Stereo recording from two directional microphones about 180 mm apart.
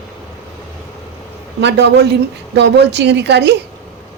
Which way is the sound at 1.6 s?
70° right (ahead or behind).